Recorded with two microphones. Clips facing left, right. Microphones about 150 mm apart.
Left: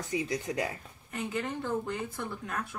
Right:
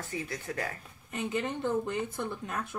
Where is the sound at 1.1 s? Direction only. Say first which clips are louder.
Right 1 dB; 20° right (ahead or behind).